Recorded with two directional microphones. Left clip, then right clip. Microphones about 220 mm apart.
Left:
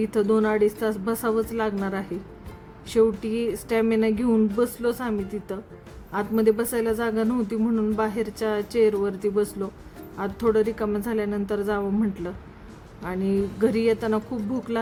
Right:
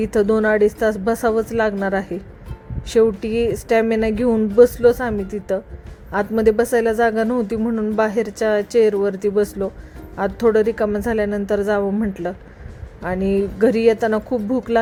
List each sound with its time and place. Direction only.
0.0 s speech: 20° right (ahead or behind)